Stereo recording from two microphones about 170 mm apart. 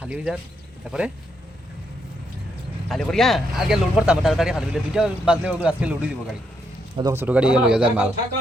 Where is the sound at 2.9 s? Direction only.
Centre (ahead or behind).